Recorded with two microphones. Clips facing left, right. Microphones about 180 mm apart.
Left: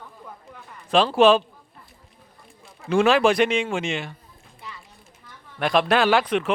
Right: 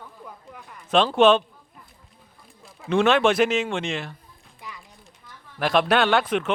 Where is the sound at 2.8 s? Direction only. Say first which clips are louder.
Left 1 dB; centre (ahead or behind).